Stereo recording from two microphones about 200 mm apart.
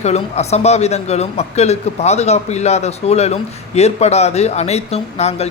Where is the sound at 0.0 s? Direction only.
35° left (ahead or behind).